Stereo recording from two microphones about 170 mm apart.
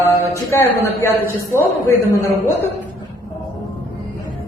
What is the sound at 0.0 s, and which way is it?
A man's voice, 15° left (ahead or behind).